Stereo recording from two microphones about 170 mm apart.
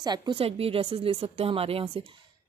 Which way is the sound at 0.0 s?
25° right (ahead or behind).